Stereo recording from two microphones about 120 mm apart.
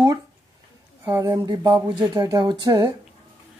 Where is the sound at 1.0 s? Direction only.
30° right (ahead or behind).